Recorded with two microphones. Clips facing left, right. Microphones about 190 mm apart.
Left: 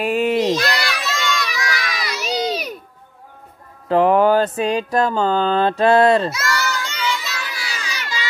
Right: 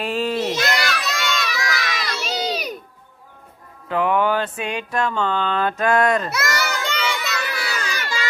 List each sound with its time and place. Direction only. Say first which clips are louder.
0.0 s a child's voice: left 5 dB; 15° left (ahead or behind)
0.6 s crowd: even; 20° right (ahead or behind)
2.0 s crowd: left 2 dB; centre (ahead or behind)
3.9 s mantra: left 6 dB; 35° left (ahead or behind)
6.3 s child singing: left 1 dB; 60° right (ahead or behind)